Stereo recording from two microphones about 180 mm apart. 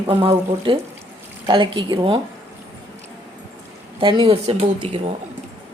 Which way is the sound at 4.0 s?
30° right (ahead or behind).